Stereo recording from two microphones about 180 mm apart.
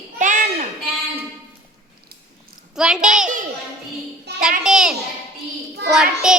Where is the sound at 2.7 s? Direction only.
5° right (ahead or behind).